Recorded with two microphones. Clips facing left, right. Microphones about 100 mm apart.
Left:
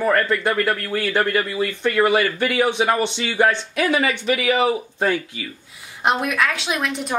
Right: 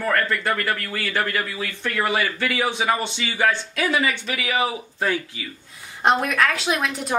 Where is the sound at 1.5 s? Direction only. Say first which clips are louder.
Left 7 dB; 15° left (ahead or behind).